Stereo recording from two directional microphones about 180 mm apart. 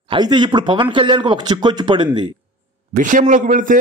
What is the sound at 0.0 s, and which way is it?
Speech, 25° right (ahead or behind).